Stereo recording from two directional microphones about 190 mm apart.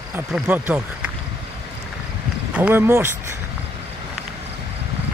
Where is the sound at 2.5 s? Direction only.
10° right (ahead or behind).